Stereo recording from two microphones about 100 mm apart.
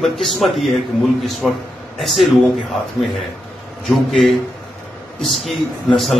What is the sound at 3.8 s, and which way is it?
A man's voice, centre (ahead or behind).